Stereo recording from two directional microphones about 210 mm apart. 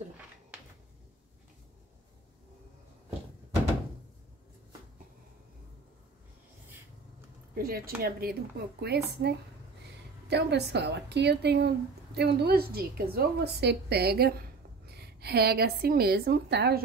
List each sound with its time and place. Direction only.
7.5 s a woman's voice: 45° right (ahead or behind)